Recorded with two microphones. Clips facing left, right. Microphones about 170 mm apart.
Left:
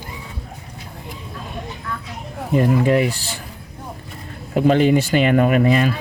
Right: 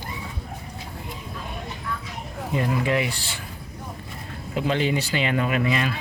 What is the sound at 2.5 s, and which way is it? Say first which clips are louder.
Speech: left 8 dB; 45° left (ahead or behind).